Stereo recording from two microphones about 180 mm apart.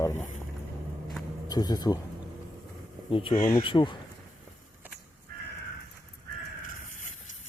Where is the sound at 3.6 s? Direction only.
25° left (ahead or behind).